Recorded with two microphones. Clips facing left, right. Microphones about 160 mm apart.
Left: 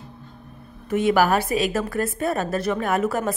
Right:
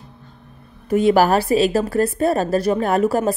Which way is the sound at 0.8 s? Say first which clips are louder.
Right 4 dB; 35° right (ahead or behind).